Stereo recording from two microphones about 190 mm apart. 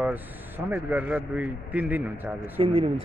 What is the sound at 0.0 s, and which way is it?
Speech, 10° right (ahead or behind).